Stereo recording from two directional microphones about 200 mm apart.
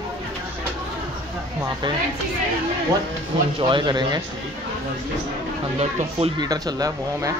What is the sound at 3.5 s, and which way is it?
Speech, 25° right (ahead or behind).